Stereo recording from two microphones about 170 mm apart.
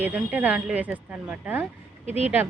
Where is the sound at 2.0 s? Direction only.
35° left (ahead or behind).